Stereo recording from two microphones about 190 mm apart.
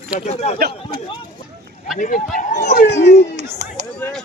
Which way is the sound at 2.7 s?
40° left (ahead or behind).